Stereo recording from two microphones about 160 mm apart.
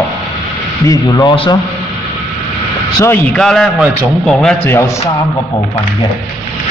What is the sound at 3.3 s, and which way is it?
Speech, 5° left (ahead or behind).